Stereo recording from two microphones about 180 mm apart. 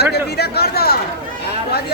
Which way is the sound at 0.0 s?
65° left (ahead or behind).